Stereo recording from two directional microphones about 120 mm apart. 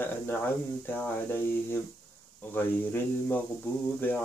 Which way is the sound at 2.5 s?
15° left (ahead or behind).